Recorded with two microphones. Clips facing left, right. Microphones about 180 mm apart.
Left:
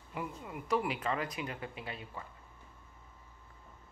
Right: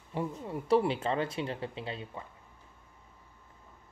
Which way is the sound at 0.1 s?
30° right (ahead or behind).